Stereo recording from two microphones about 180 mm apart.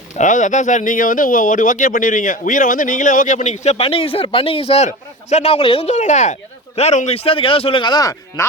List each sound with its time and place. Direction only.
0.2 s a man's voice: 45° left (ahead or behind); by 8.4 s 20° left (ahead or behind)